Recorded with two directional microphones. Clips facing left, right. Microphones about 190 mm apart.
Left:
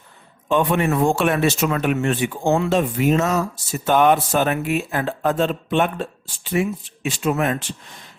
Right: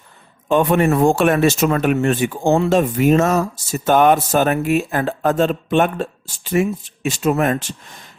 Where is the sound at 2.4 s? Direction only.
30° right (ahead or behind).